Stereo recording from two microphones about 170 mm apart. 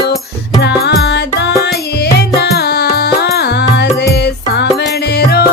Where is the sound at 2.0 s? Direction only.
70° left (ahead or behind).